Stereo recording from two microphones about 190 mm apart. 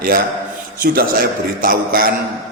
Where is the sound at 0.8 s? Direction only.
50° right (ahead or behind).